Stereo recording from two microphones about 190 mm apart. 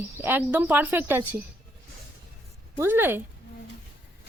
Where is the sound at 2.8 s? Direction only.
10° right (ahead or behind).